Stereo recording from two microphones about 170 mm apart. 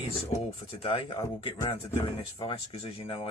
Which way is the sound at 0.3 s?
30° left (ahead or behind).